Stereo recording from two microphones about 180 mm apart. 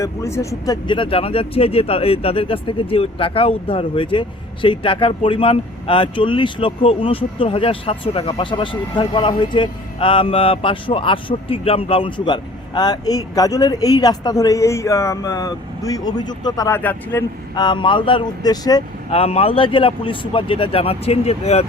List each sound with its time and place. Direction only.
0.0 s speech: 15° left (ahead or behind)
17.5 s speech: 25° left (ahead or behind)
19.2 s speech: 35° left (ahead or behind)